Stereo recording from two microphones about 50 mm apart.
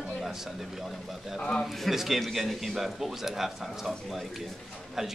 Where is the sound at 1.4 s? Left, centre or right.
Centre.